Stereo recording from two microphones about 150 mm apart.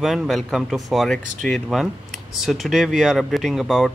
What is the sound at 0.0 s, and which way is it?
Speech, centre (ahead or behind).